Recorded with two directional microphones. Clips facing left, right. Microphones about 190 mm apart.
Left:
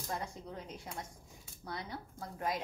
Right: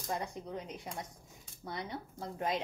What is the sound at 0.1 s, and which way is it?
A woman's voice, 20° right (ahead or behind).